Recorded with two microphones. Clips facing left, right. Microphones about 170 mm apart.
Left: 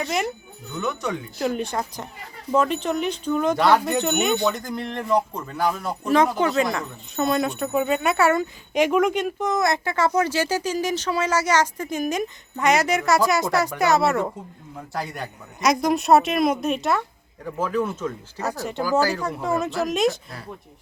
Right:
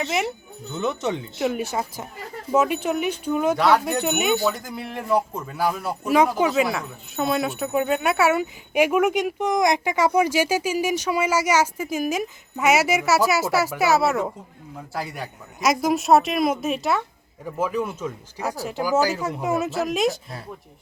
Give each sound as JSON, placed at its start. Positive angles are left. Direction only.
{"t": 0.7, "sound": "speech", "side_deg": -20}
{"t": 1.4, "sound": "speech", "side_deg": -5}
{"t": 18.8, "sound": "speech", "side_deg": -15}